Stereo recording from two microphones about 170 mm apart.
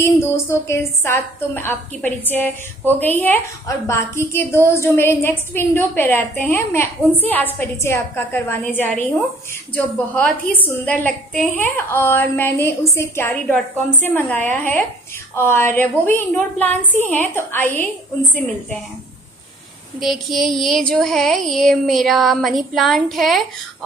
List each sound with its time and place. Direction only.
0.0 s a woman's voice: 15° left (ahead or behind)
20.0 s child singing: centre (ahead or behind)